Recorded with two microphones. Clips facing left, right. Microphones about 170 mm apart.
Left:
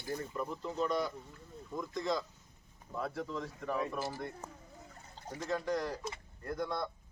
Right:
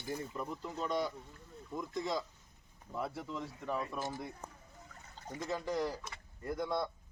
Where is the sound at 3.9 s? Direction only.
10° left (ahead or behind).